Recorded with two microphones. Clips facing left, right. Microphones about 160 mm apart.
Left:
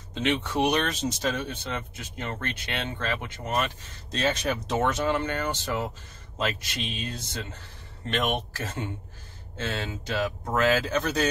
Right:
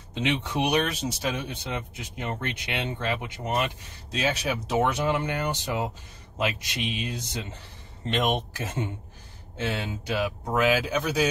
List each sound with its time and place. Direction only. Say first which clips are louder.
0.1 s speech: left 1 dB; 15° right (ahead or behind)